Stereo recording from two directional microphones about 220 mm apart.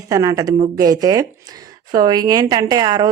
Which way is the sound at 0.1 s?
15° right (ahead or behind).